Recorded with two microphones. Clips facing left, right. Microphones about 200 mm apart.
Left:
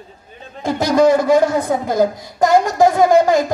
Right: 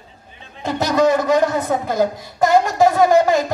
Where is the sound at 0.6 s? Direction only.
10° left (ahead or behind).